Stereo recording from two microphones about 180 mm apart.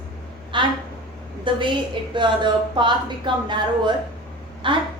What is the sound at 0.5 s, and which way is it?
A woman's voice, 25° right (ahead or behind).